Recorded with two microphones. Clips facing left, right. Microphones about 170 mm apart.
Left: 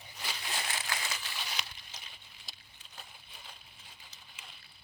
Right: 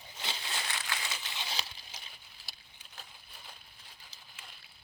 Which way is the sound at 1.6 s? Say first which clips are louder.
Right 1 dB; 30° right (ahead or behind).